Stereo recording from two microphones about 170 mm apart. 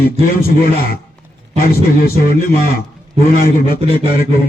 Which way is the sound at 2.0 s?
60° left (ahead or behind).